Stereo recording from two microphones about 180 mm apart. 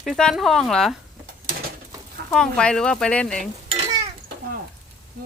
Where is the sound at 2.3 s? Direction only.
5° left (ahead or behind).